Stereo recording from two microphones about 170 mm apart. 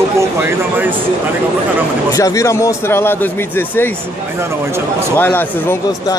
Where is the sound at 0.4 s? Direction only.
10° right (ahead or behind).